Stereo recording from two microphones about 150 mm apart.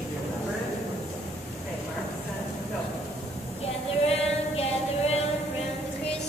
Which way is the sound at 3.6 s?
40° left (ahead or behind).